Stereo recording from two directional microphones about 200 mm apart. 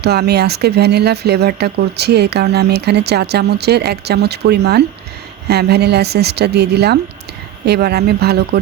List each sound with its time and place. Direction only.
0.0 s speech: 55° right (ahead or behind)